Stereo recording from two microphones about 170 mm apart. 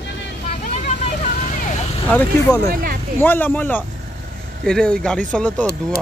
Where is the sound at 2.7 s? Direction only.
60° right (ahead or behind).